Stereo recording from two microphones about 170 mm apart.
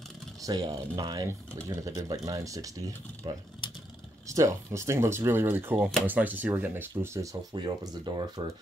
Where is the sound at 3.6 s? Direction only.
30° left (ahead or behind).